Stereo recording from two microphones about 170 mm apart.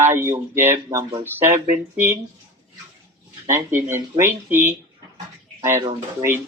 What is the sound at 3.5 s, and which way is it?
Speech, 15° right (ahead or behind).